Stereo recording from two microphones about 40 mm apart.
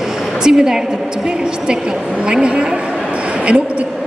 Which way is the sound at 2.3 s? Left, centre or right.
Right.